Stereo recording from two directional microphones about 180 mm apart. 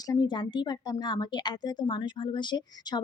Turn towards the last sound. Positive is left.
turn(degrees=25)  # may be behind; listen again after turning